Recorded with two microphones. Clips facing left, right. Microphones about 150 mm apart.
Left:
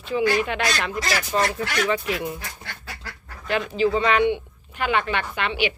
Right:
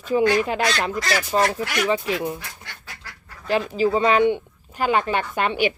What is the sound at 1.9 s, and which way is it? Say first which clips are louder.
Speech: right 2 dB; 30° right (ahead or behind).